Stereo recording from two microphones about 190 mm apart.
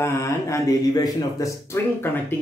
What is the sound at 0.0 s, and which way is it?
Speech, 15° left (ahead or behind).